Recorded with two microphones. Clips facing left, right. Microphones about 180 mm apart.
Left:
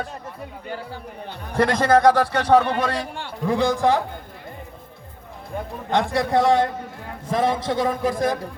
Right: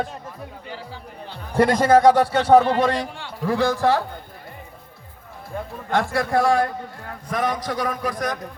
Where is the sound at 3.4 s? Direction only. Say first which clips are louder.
Even; 20° left (ahead or behind).